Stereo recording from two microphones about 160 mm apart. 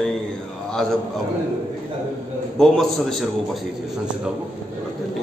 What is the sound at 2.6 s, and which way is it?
Speech, centre (ahead or behind).